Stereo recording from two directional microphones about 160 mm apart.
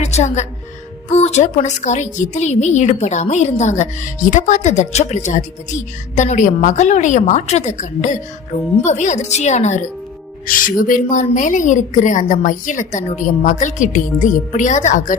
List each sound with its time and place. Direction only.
0.0 s a woman's voice: 45° left (ahead or behind)
10.4 s a woman's voice: 60° left (ahead or behind)